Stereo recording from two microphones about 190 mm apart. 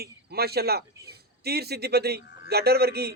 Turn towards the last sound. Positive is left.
turn(degrees=-55)  # may be behind; listen again after turning